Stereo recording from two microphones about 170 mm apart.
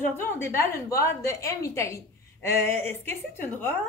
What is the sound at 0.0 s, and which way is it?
A woman's voice, 15° left (ahead or behind).